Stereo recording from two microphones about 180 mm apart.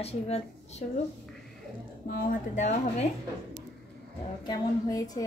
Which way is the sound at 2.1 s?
50° left (ahead or behind).